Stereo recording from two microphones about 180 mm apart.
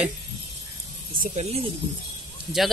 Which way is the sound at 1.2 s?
35° right (ahead or behind).